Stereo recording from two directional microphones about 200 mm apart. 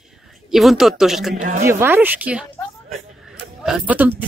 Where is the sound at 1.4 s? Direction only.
40° right (ahead or behind).